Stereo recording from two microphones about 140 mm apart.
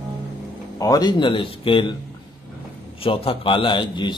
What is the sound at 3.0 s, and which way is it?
Speech, 40° left (ahead or behind).